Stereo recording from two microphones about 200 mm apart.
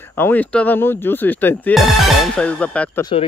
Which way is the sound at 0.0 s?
10° left (ahead or behind).